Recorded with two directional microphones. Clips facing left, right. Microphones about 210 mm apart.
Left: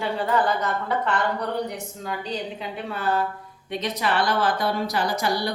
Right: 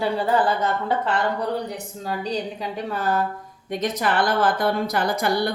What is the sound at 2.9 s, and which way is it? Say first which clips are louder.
A woman's voice: right 1 dB; 45° right (ahead or behind).